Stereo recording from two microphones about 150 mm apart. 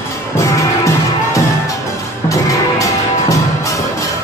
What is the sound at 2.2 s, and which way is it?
Music, 20° left (ahead or behind).